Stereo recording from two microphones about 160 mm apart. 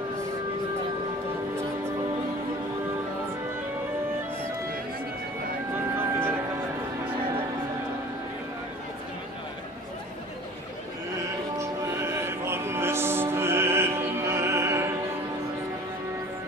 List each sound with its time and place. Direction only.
5.9 s music: 15° right (ahead or behind)
11.5 s music: 15° right (ahead or behind)